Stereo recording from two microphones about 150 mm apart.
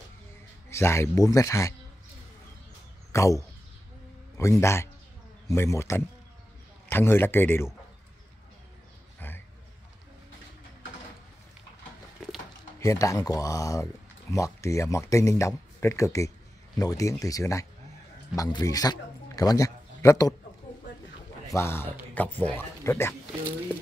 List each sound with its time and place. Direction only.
0.7 s speech: 15° left (ahead or behind)
3.1 s speech: 20° left (ahead or behind)
9.2 s a sound: 10° left (ahead or behind)
12.2 s a sound: centre (ahead or behind)
12.8 s speech: 20° left (ahead or behind)
21.5 s speech: 15° left (ahead or behind)